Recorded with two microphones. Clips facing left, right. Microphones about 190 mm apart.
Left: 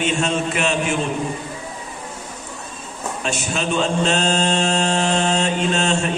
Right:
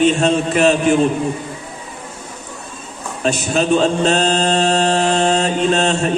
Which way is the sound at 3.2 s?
35° right (ahead or behind).